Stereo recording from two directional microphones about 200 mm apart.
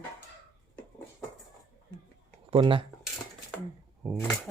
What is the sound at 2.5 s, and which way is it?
Speech, 25° right (ahead or behind).